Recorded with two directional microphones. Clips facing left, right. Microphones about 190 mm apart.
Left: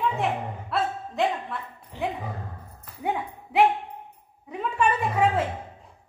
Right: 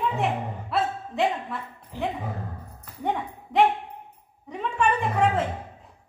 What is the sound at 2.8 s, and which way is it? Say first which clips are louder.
Ping: even; 5° left (ahead or behind).